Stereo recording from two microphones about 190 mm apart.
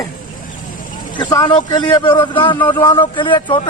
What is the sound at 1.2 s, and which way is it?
A man's voice, 20° left (ahead or behind).